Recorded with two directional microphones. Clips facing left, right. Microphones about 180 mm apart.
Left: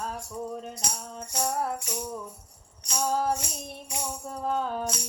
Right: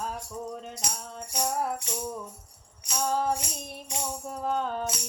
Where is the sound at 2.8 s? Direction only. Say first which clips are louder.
Even; centre (ahead or behind).